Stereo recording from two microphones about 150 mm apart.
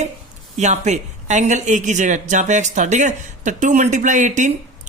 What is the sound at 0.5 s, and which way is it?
Speech, 50° right (ahead or behind).